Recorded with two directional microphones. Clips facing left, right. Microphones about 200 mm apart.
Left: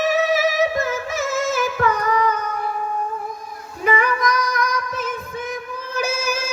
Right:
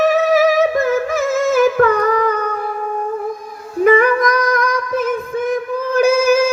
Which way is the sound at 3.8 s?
50° right (ahead or behind).